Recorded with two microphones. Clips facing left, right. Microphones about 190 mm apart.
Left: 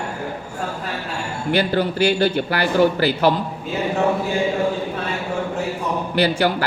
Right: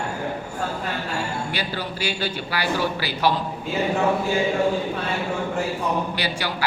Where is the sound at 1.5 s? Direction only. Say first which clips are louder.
Left 10 dB; 55° left (ahead or behind).